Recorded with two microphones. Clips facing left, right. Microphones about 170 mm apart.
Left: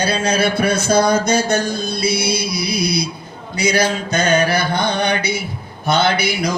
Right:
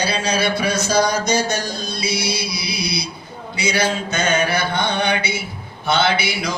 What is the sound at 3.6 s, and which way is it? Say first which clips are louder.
Mantra: left 3 dB; 40° left (ahead or behind).